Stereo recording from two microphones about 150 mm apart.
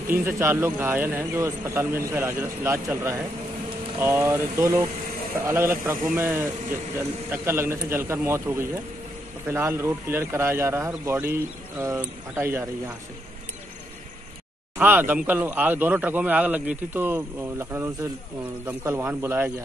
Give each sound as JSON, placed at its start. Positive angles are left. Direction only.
{"t": 0.2, "sound": "a man's voice", "side_deg": -15}
{"t": 14.8, "sound": "a man's voice", "side_deg": -10}